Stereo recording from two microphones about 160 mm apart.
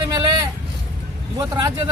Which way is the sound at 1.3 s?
20° right (ahead or behind).